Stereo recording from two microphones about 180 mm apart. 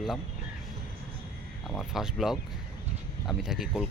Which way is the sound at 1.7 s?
Centre (ahead or behind).